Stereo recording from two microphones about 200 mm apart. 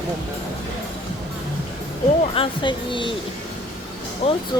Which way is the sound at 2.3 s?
25° left (ahead or behind).